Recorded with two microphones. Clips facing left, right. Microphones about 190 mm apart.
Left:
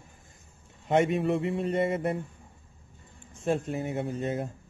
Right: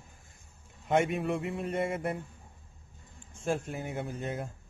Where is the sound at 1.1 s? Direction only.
Centre (ahead or behind).